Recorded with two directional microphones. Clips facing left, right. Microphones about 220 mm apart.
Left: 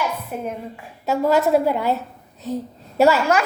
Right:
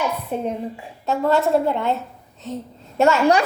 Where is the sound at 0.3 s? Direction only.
30° right (ahead or behind).